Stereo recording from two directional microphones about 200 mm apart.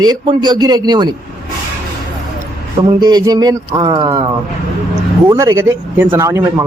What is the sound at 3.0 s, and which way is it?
A man's voice, 20° right (ahead or behind).